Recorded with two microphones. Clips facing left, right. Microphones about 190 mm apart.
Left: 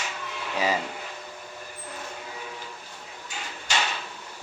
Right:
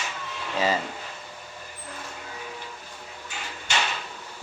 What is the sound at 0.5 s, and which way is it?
Speech, 10° left (ahead or behind).